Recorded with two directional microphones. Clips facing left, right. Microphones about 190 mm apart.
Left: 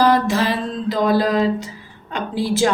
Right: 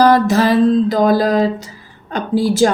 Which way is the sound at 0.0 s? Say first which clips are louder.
Right 5 dB; 40° right (ahead or behind).